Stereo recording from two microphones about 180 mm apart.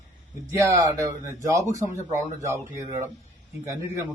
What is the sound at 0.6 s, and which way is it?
A man's voice, 20° right (ahead or behind).